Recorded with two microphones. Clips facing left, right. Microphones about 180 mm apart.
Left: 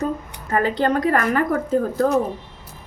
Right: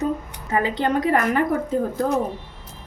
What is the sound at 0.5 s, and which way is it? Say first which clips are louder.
Speech: left 2 dB; 15° right (ahead or behind).